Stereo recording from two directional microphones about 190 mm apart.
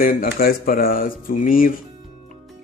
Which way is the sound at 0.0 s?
50° left (ahead or behind).